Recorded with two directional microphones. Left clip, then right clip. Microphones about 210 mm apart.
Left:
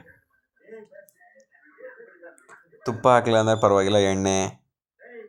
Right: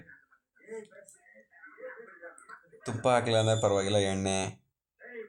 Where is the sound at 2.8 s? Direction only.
25° left (ahead or behind).